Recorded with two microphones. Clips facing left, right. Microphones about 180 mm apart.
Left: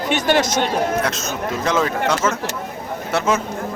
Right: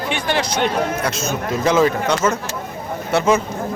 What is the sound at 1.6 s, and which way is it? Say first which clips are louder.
Speech: right 4 dB; 5° right (ahead or behind).